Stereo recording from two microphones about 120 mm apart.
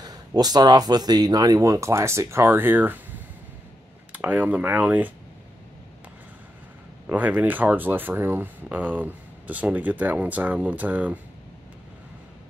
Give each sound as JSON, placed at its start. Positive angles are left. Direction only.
{"t": 0.0, "sound": "speech", "side_deg": -35}
{"t": 4.1, "sound": "speech", "side_deg": -15}
{"t": 7.1, "sound": "speech", "side_deg": -15}